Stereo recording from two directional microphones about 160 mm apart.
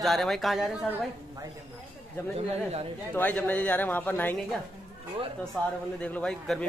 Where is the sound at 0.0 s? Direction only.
Centre (ahead or behind).